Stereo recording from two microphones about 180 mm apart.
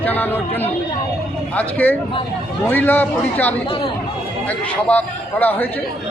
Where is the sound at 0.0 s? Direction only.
10° left (ahead or behind).